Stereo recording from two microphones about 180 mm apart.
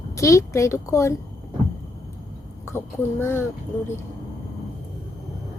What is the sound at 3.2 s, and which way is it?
Speech, 15° left (ahead or behind).